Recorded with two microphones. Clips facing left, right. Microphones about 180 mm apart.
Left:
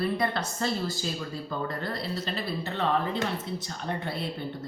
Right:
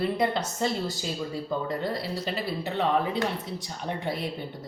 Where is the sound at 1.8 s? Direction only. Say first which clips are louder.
Right 2 dB; 15° right (ahead or behind).